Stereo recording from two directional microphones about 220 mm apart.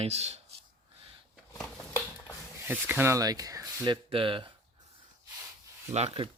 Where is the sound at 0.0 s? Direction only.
30° right (ahead or behind).